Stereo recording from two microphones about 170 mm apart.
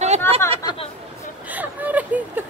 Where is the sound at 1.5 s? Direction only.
10° right (ahead or behind).